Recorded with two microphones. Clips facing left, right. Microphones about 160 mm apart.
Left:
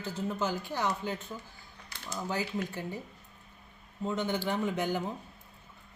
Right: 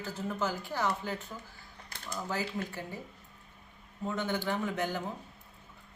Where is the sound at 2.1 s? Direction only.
20° left (ahead or behind).